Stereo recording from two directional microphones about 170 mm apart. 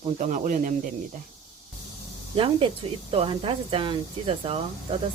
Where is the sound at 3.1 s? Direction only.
35° right (ahead or behind).